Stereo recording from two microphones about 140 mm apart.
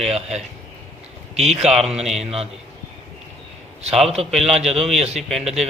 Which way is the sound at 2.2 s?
45° right (ahead or behind).